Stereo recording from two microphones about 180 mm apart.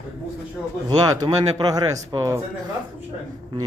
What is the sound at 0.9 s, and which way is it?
A man's voice, 20° right (ahead or behind).